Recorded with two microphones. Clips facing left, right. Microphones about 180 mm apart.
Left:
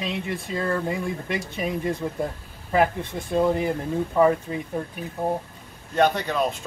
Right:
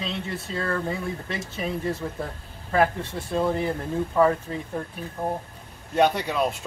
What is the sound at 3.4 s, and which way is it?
Speech, 10° left (ahead or behind).